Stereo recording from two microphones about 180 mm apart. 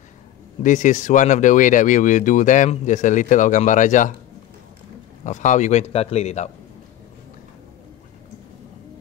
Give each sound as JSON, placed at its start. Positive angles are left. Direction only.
{"t": 0.6, "sound": "speech", "side_deg": 45}
{"t": 5.2, "sound": "a man's voice", "side_deg": 45}